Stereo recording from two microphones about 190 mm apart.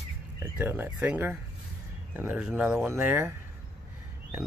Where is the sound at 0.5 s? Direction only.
10° right (ahead or behind).